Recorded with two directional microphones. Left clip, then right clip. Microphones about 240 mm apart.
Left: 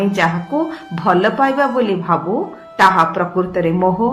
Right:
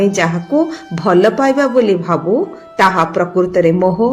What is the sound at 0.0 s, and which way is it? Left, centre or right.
A woman's voice, right.